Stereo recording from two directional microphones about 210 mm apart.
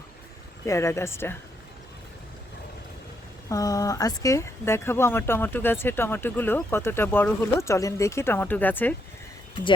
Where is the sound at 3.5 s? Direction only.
15° left (ahead or behind).